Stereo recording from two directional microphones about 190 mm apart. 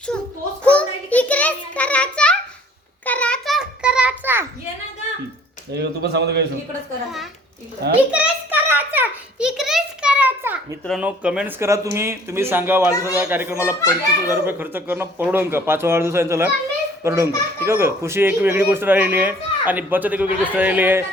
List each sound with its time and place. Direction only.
0.6 s child singing: 5° left (ahead or behind)
3.1 s a sound: 5° left (ahead or behind); by 4.4 s 10° right (ahead or behind)
5.7 s speech: 60° right (ahead or behind)
8.1 s a sound: 10° right (ahead or behind)
10.8 s speech: 5° right (ahead or behind)
12.9 s a man's voice: 15° left (ahead or behind)
13.1 s speech: 10° right (ahead or behind)